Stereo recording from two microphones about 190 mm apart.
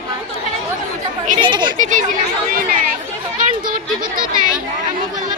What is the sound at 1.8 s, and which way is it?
Speech, 40° right (ahead or behind).